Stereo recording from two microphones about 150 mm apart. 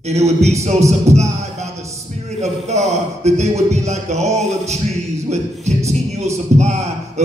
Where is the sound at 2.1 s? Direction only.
45° right (ahead or behind).